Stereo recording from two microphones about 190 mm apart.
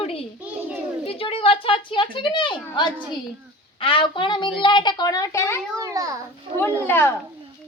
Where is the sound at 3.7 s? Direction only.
30° left (ahead or behind).